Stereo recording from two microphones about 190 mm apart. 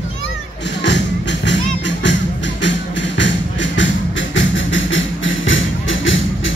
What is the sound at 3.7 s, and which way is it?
Music, 75° left (ahead or behind).